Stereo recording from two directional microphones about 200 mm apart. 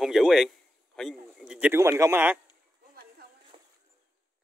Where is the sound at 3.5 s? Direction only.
25° right (ahead or behind).